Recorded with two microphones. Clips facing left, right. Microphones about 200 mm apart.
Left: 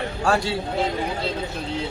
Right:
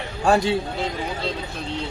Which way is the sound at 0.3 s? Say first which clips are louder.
Right 4 dB; 20° right (ahead or behind).